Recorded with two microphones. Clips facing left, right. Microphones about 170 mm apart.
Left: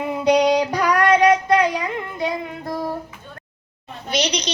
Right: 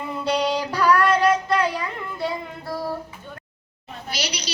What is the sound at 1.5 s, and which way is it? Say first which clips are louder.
Child singing: left 4 dB; 15° left (ahead or behind).